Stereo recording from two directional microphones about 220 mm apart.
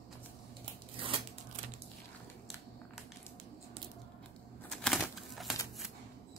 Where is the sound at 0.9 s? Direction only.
25° right (ahead or behind).